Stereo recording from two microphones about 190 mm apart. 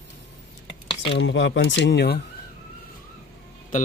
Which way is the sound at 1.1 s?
70° left (ahead or behind).